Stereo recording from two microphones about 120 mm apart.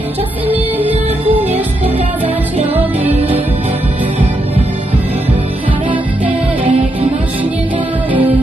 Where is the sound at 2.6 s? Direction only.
15° right (ahead or behind).